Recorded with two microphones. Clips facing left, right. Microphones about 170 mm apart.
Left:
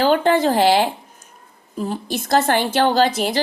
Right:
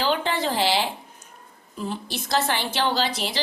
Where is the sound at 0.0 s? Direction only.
50° left (ahead or behind).